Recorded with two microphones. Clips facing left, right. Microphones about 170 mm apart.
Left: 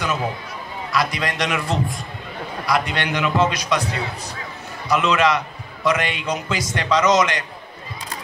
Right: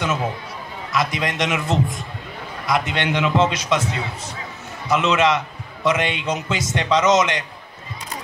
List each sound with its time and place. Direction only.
0.9 s a man's voice: 20° right (ahead or behind)